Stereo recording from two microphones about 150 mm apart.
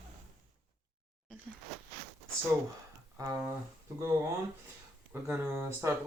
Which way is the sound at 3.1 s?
20° right (ahead or behind).